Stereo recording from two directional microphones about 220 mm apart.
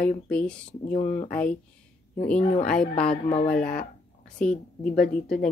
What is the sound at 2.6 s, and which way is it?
Speech, 5° left (ahead or behind).